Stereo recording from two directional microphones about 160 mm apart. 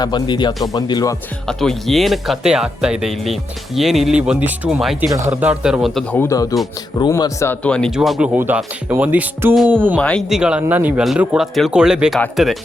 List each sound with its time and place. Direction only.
0.0 s speech: 30° left (ahead or behind)
1.5 s speech: centre (ahead or behind)
5.1 s a man's voice: 15° right (ahead or behind); by 6.1 s centre (ahead or behind)
6.1 s a man's voice: 20° left (ahead or behind); by 10.0 s 10° right (ahead or behind)
10.0 s speech: 5° left (ahead or behind)